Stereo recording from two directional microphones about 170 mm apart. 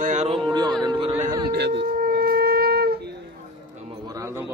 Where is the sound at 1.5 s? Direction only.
80° right.